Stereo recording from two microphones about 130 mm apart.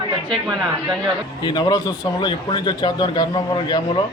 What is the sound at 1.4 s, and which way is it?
A man's voice, 30° left (ahead or behind).